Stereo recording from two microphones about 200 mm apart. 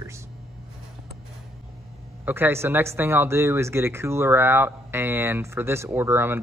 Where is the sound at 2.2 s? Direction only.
10° right (ahead or behind).